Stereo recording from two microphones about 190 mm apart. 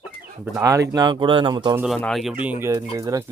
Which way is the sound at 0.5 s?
15° right (ahead or behind).